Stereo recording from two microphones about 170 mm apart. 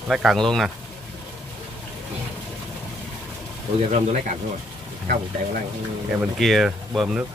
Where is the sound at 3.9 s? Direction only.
45° right (ahead or behind).